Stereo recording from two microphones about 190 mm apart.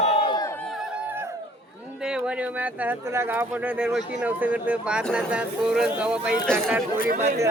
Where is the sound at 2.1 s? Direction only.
5° right (ahead or behind).